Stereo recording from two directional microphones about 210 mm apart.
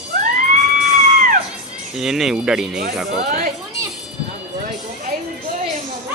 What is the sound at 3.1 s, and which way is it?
Speech, 45° right (ahead or behind).